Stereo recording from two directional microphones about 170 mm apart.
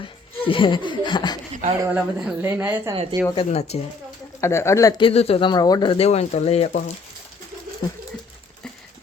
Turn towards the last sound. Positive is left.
turn(degrees=25)  # may be behind; listen again after turning